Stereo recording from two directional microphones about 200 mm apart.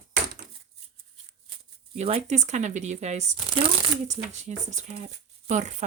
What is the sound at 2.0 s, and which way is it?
Speech, 30° right (ahead or behind).